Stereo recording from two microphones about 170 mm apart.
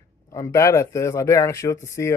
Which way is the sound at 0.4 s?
15° left (ahead or behind).